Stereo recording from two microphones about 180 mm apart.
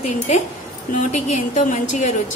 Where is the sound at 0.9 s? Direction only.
40° left (ahead or behind).